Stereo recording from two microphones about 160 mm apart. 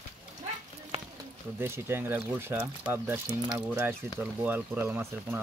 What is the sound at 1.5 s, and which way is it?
Speech, 15° right (ahead or behind).